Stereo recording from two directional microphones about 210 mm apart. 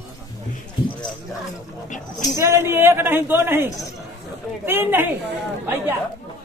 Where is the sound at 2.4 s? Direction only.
10° right (ahead or behind).